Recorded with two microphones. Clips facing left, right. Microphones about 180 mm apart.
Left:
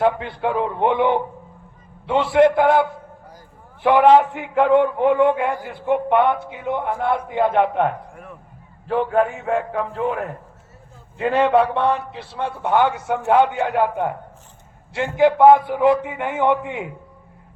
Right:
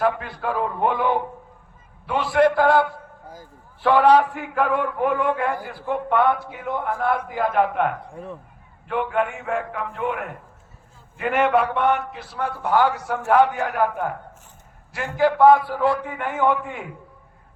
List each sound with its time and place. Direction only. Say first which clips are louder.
0.0 s a man's voice: left 3 dB; 25° left (ahead or behind)
8.1 s speech: right 5 dB; 30° right (ahead or behind)
8.9 s a man's voice: left 4 dB; 35° left (ahead or behind)